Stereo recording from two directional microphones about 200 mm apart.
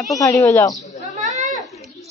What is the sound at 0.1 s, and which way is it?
Speech, 15° left (ahead or behind).